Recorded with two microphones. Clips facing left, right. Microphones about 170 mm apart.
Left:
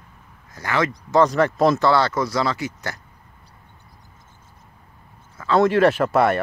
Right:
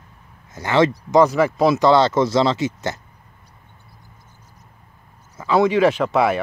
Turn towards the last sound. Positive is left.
turn(degrees=0)  # may be behind; listen again after turning